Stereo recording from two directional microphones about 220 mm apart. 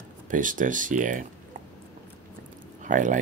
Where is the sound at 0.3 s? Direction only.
35° right (ahead or behind).